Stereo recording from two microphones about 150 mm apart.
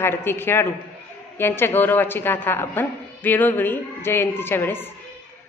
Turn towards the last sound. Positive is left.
turn(degrees=15)  # may be behind; listen again after turning